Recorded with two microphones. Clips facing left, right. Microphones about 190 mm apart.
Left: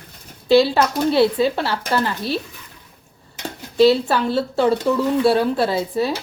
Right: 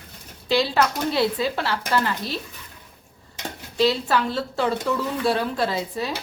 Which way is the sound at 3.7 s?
30° left (ahead or behind).